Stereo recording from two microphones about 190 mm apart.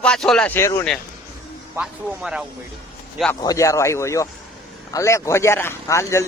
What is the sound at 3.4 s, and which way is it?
Speech, 20° left (ahead or behind).